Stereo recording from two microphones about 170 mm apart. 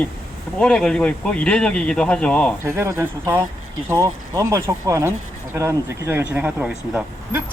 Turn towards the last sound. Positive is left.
turn(degrees=-5)  # may be behind; listen again after turning